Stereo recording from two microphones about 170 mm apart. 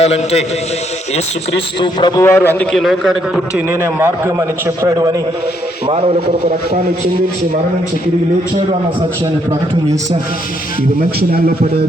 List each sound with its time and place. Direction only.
0.0 s a man's voice: 40° left (ahead or behind)
1.8 s a man's voice: 25° left (ahead or behind)
2.7 s a man's voice: centre (ahead or behind)
3.7 s a man's voice: 15° right (ahead or behind)
6.1 s a man's voice: 55° right (ahead or behind)
9.5 s a man's voice: 20° right (ahead or behind)
11.2 s a man's voice: 60° right (ahead or behind)